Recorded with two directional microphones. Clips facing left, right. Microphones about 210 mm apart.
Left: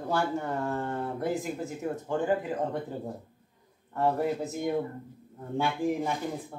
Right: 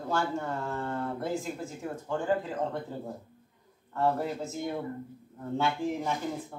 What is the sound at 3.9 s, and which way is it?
Speech, 15° left (ahead or behind).